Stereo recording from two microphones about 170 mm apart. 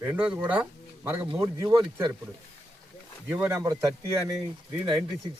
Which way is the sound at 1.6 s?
25° right (ahead or behind).